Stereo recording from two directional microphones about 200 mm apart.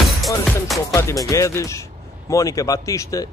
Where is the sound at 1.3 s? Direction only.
15° left (ahead or behind).